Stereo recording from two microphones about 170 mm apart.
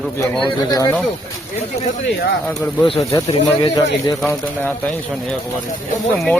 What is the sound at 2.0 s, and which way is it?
Speech, 90° left.